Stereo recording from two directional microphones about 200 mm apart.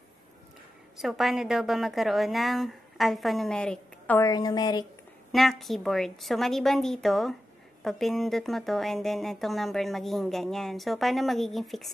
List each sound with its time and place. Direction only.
0.9 s speech: centre (ahead or behind)
4.2 s a woman's voice: 20° left (ahead or behind)
5.3 s speech: centre (ahead or behind)